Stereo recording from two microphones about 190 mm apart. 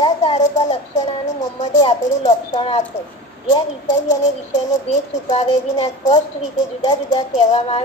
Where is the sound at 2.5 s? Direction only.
30° left (ahead or behind).